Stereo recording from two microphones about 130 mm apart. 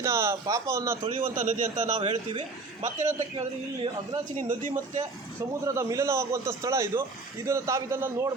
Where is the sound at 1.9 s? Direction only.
45° right (ahead or behind).